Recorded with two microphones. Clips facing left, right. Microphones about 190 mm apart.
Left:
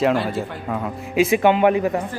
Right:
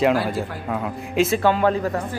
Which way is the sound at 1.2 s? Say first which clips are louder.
Left 3 dB; 20° left (ahead or behind).